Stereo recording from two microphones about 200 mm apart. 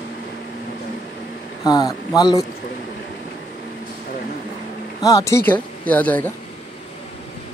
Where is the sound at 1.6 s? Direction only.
20° left (ahead or behind).